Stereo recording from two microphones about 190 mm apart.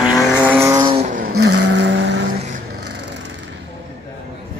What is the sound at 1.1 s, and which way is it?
Vehicle, 60° right (ahead or behind).